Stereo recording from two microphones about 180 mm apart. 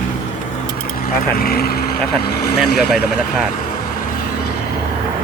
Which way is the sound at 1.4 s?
60° left (ahead or behind).